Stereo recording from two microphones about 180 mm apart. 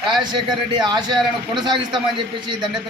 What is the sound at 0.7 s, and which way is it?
Speech, 25° right (ahead or behind).